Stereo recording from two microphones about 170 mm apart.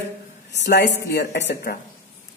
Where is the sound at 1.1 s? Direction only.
65° left (ahead or behind).